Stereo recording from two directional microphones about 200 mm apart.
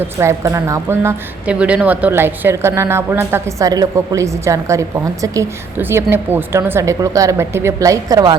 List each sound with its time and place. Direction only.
0.2 s speech: 15° right (ahead or behind)